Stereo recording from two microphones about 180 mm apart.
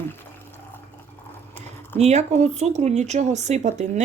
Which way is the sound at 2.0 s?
40° right (ahead or behind).